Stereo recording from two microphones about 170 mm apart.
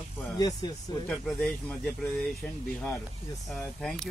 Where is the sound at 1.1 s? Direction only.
5° left (ahead or behind).